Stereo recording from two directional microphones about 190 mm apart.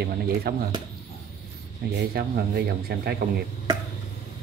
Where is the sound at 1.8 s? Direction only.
50° right (ahead or behind).